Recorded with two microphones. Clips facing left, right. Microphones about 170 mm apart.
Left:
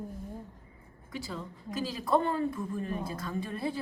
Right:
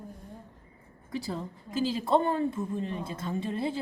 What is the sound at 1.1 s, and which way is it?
A woman's voice, 35° right (ahead or behind).